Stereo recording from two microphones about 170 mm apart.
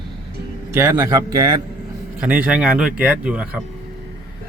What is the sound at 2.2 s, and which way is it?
A man's voice, 10° right (ahead or behind).